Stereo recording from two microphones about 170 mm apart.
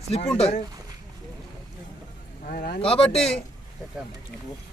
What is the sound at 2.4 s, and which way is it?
Speech, 60° left (ahead or behind).